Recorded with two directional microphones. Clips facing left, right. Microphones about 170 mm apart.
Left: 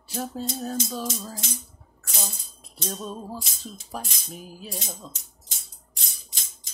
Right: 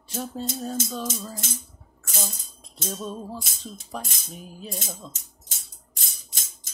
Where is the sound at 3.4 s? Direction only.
50° right (ahead or behind).